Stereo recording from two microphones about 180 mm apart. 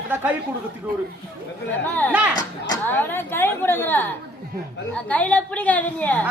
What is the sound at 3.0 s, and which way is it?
Speech, 10° left (ahead or behind).